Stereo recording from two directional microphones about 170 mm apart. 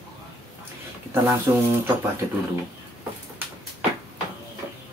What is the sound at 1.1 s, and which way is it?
Speech, 15° right (ahead or behind).